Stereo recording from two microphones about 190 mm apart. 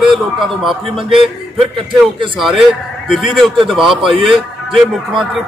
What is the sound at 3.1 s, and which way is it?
A man's voice, centre (ahead or behind).